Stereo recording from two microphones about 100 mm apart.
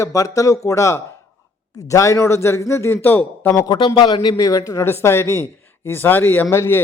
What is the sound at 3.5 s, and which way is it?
A man's voice, 50° left (ahead or behind).